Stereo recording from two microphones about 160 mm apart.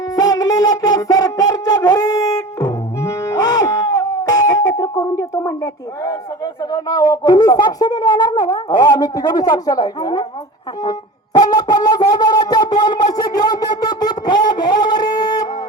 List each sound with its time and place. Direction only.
0.2 s wind instrument: 25° left (ahead or behind)
6.1 s speech: 25° left (ahead or behind)
11.3 s a sound: 25° left (ahead or behind)